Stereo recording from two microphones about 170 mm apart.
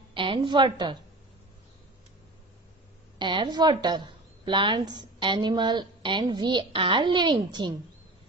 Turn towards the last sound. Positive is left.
turn(degrees=-25)  # may be behind; listen again after turning